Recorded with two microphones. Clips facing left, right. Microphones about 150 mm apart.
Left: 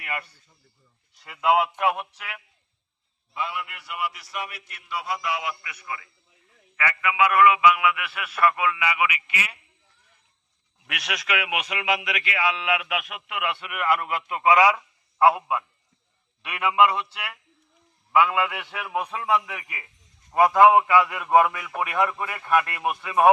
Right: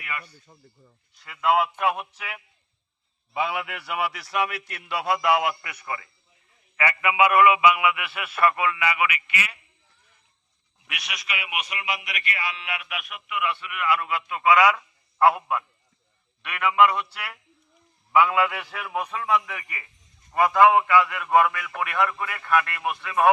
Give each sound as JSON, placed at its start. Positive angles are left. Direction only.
{"t": 0.0, "sound": "a man's voice", "side_deg": 50}
{"t": 0.4, "sound": "speech", "side_deg": -65}
{"t": 1.3, "sound": "a man's voice", "side_deg": 10}
{"t": 3.3, "sound": "a man's voice", "side_deg": -90}
{"t": 6.7, "sound": "a man's voice", "side_deg": -20}
{"t": 9.1, "sound": "a man's voice", "side_deg": 30}
{"t": 10.8, "sound": "a man's voice", "side_deg": 90}
{"t": 14.3, "sound": "a man's voice", "side_deg": 25}
{"t": 16.8, "sound": "a man's voice", "side_deg": 5}